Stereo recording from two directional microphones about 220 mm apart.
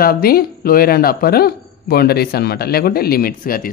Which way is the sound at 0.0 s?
45° left (ahead or behind).